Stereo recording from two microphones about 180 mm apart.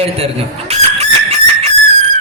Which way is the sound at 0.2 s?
35° right (ahead or behind).